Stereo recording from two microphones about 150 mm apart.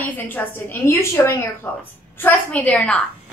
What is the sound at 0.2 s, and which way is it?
A woman's voice, 15° left (ahead or behind).